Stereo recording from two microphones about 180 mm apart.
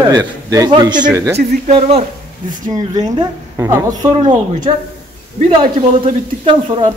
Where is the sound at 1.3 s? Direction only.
35° right (ahead or behind).